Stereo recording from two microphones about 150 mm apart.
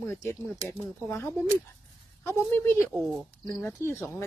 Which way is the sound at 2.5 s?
15° left (ahead or behind).